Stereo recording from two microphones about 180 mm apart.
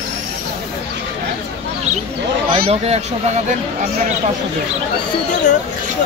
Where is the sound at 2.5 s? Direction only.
35° right (ahead or behind).